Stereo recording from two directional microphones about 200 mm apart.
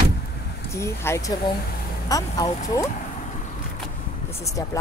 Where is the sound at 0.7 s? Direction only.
15° left (ahead or behind).